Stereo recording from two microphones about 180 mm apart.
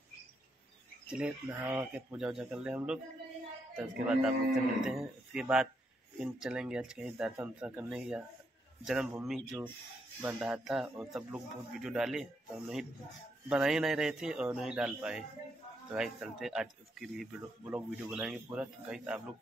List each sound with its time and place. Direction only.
1.0 s speech: 5° right (ahead or behind)
4.0 s speech: 5° right (ahead or behind)